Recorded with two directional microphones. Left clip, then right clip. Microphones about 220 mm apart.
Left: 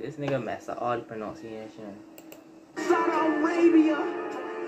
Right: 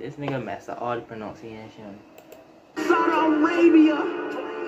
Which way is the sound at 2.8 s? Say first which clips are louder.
Right 4 dB; 40° right (ahead or behind).